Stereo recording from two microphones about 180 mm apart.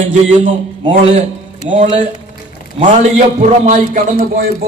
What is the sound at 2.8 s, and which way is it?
A man's voice, 40° right (ahead or behind).